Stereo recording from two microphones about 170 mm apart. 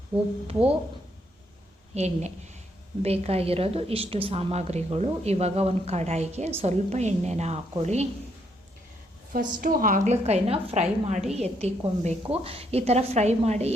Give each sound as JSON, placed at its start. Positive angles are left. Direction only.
{"t": 0.1, "sound": "a woman's voice", "side_deg": -30}
{"t": 2.0, "sound": "a woman's voice", "side_deg": -40}
{"t": 9.6, "sound": "a woman's voice", "side_deg": -55}